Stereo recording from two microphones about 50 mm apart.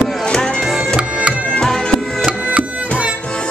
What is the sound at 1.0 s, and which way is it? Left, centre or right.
Music, right.